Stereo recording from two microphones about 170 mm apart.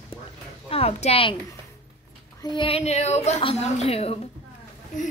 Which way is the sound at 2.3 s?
25° left (ahead or behind).